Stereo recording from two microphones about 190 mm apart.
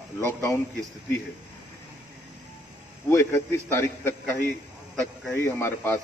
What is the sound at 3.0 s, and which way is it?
A man's voice, 15° left (ahead or behind).